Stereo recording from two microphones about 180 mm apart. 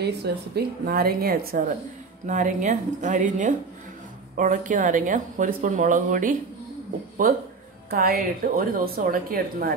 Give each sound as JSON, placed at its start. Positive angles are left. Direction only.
{"t": 0.0, "sound": "a woman's voice", "side_deg": -65}
{"t": 2.2, "sound": "a woman's voice", "side_deg": -45}